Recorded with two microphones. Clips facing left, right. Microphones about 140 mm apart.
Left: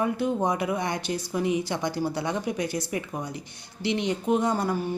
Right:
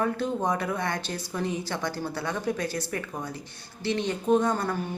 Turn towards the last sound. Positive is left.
turn(degrees=15)  # may be behind; listen again after turning